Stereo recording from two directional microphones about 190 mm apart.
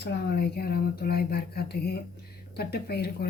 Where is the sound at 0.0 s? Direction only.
60° left (ahead or behind).